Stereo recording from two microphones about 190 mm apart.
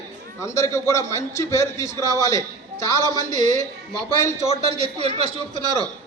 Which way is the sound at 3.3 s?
40° right (ahead or behind).